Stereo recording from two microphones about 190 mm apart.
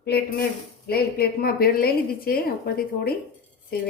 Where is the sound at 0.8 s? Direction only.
55° left (ahead or behind).